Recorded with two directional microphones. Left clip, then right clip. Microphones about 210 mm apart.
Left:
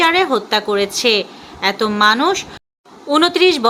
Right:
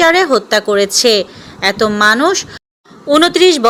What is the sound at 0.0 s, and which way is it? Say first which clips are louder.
A woman's voice: right 4 dB; 20° right (ahead or behind).